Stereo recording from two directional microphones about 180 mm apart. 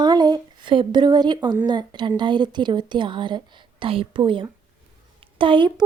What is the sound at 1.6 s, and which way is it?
A woman's voice, 25° right (ahead or behind).